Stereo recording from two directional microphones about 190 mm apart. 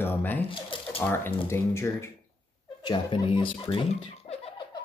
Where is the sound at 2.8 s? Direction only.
25° left (ahead or behind).